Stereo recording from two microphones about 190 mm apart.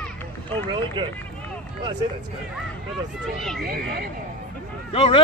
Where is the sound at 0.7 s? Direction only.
25° right (ahead or behind).